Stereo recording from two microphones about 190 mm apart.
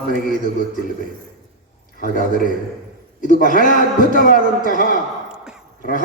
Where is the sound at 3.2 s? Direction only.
45° left (ahead or behind).